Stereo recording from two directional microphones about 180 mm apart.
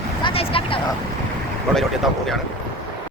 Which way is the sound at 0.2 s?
30° left (ahead or behind).